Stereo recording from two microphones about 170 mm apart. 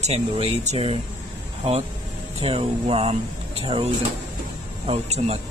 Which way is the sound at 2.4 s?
35° right (ahead or behind).